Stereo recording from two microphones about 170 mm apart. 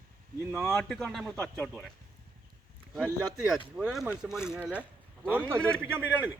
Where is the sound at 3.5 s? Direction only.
5° right (ahead or behind).